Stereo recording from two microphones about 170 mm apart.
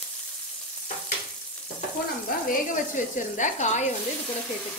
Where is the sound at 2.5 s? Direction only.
50° left (ahead or behind).